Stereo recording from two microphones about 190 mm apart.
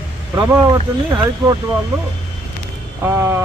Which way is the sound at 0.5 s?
20° right (ahead or behind).